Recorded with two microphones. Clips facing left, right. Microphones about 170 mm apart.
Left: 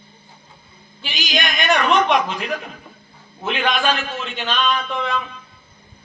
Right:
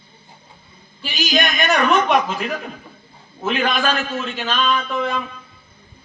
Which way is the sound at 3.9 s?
40° right (ahead or behind).